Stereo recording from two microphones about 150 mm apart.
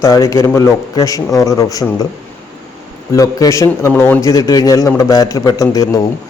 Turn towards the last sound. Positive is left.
turn(degrees=25)  # may be behind; listen again after turning